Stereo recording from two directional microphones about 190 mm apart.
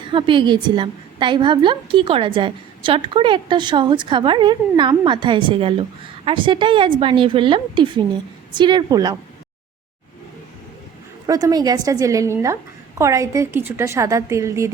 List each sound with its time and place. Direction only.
0.0 s a woman's voice: 25° right (ahead or behind)
11.3 s a woman's voice: 20° right (ahead or behind)